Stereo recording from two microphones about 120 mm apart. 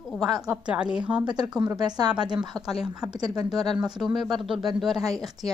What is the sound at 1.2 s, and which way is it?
Speech, 35° right (ahead or behind).